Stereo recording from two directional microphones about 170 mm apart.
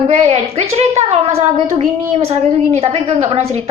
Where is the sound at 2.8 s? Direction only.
35° right (ahead or behind).